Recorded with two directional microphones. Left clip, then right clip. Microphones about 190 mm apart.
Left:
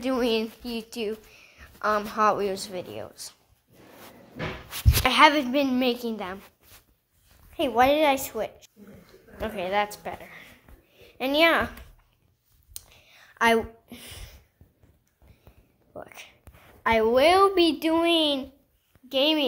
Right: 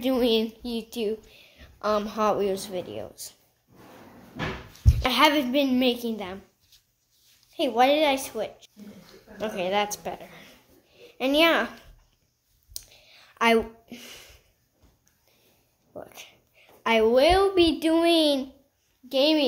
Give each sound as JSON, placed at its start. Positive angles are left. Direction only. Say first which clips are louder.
{"t": 0.0, "sound": "a woman's voice", "louder": "right 2 dB", "side_deg": -5}
{"t": 5.0, "sound": "a woman's voice", "louder": "left 2 dB", "side_deg": 0}
{"t": 7.7, "sound": "a woman's voice", "louder": "left 1 dB", "side_deg": 15}
{"t": 9.4, "sound": "a woman's voice", "louder": "right 1 dB", "side_deg": 0}
{"t": 12.7, "sound": "a sound", "louder": "right 3 dB", "side_deg": 0}
{"t": 15.9, "sound": "a sound", "louder": "even", "side_deg": 5}
{"t": 16.8, "sound": "a woman's voice", "louder": "right 1 dB", "side_deg": -10}
{"t": 17.1, "sound": "a woman's voice", "louder": "left 2 dB", "side_deg": 15}
{"t": 17.6, "sound": "a woman's voice", "louder": "right 1 dB", "side_deg": 5}